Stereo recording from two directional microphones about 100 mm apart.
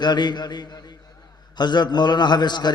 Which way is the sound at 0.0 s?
45° left (ahead or behind).